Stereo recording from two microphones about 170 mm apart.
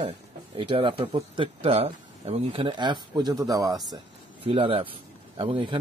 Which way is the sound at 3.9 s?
35° right (ahead or behind).